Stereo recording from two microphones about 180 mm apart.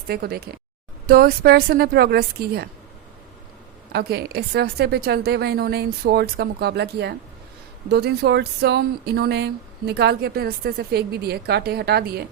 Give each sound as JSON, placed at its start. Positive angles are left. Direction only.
{"t": 0.1, "sound": "speech", "side_deg": -60}
{"t": 3.9, "sound": "speech", "side_deg": -65}